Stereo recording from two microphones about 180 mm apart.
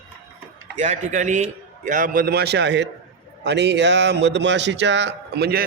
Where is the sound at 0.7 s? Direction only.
40° right (ahead or behind); by 5.7 s 60° right (ahead or behind).